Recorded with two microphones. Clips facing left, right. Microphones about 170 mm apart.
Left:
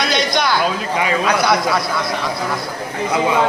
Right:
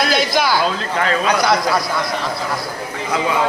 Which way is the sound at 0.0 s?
5° right (ahead or behind).